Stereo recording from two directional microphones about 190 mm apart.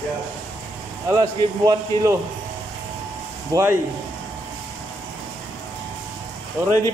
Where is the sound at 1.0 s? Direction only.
15° right (ahead or behind).